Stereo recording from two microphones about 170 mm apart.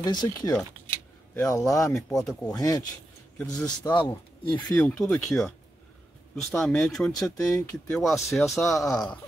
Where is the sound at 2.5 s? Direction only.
20° left (ahead or behind).